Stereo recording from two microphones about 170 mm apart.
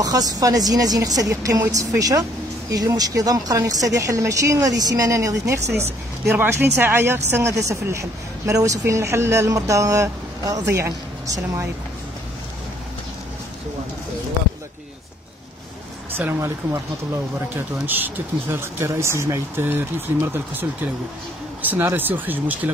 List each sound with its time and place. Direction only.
0.0 s a woman's voice: 20° right (ahead or behind)
16.2 s a woman's voice: 15° right (ahead or behind)
17.8 s a woman's voice: 10° right (ahead or behind)